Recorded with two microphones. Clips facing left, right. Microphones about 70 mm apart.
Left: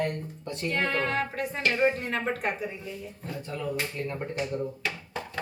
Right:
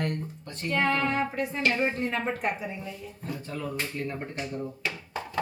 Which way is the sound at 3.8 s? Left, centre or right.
Centre.